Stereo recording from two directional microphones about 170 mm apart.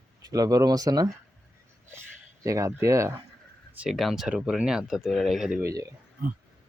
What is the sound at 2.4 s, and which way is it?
Speech, 20° right (ahead or behind).